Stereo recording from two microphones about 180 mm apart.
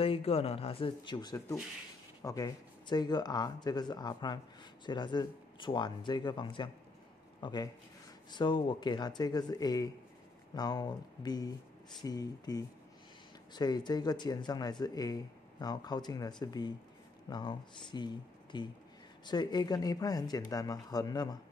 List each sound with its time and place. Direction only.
0.0 s speech: 30° left (ahead or behind)